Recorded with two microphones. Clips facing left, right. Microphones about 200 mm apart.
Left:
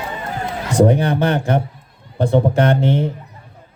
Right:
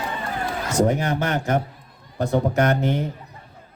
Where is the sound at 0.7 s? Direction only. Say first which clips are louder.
Left 6 dB; 35° left (ahead or behind).